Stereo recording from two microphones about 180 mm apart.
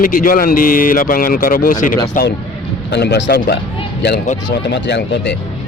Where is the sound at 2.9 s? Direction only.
70° left (ahead or behind).